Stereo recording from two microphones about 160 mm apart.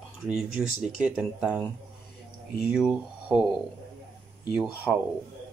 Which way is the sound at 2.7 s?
5° right (ahead or behind).